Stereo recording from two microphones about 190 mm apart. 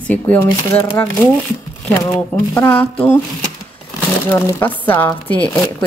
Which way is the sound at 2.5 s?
5° left (ahead or behind).